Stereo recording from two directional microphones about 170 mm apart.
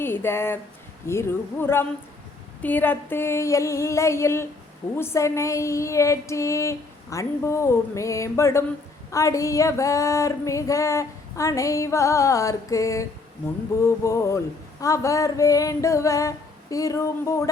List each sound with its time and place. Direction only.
0.0 s speech: 15° left (ahead or behind)
1.0 s a sound: 15° left (ahead or behind)
13.8 s female singing: 15° left (ahead or behind)